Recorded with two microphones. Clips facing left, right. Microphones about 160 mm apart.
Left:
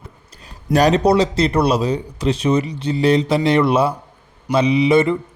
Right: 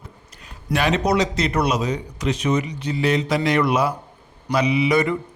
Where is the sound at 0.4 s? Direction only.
40° left (ahead or behind).